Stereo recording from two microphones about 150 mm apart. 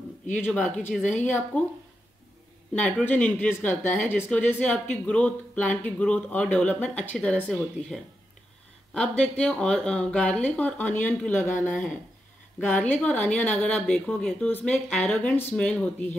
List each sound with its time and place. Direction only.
0.4 s speech: 10° left (ahead or behind)
1.0 s a woman's voice: 55° left (ahead or behind)
1.5 s speech: 10° left (ahead or behind)